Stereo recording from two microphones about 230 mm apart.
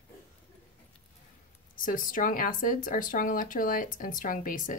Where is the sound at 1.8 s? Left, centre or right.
Left.